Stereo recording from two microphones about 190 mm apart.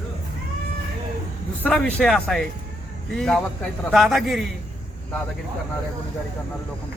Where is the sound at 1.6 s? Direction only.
5° left (ahead or behind).